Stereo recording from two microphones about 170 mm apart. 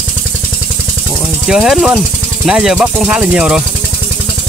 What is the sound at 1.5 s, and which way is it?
Speech, 5° right (ahead or behind).